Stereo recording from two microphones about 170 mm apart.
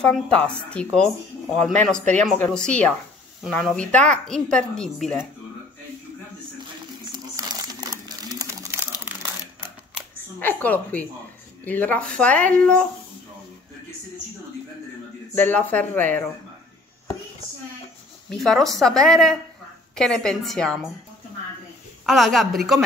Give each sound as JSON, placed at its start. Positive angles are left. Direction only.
{"t": 0.0, "sound": "speech", "side_deg": 5}
{"t": 7.1, "sound": "crumpling", "side_deg": -25}
{"t": 10.4, "sound": "speech", "side_deg": 10}
{"t": 15.3, "sound": "speech", "side_deg": 10}
{"t": 18.3, "sound": "speech", "side_deg": 0}
{"t": 22.0, "sound": "speech", "side_deg": 0}